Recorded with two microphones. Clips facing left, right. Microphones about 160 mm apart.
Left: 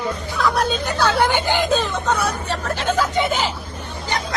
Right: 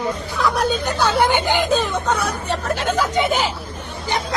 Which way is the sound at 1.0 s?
10° right (ahead or behind).